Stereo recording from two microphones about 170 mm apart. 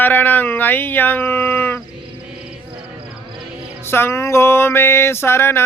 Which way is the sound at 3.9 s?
15° left (ahead or behind).